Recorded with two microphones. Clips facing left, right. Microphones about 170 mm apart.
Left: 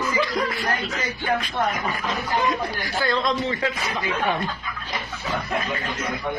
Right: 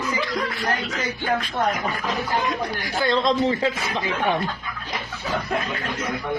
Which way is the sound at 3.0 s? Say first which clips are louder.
Right 4 dB; 25° right (ahead or behind).